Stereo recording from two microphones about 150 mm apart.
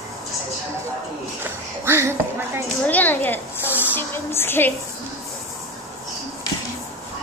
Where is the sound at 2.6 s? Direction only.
10° left (ahead or behind).